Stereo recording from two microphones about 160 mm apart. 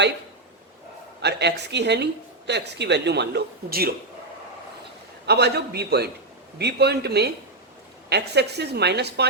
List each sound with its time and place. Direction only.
1.2 s speech: 90° right; by 3.9 s 70° right (ahead or behind)
5.2 s a man's voice: 90° right